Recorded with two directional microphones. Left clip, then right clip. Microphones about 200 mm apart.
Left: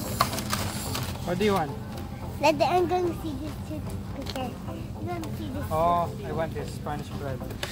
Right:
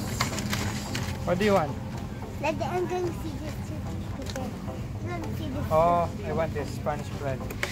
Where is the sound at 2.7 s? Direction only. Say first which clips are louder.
Left 5 dB; 50° left (ahead or behind).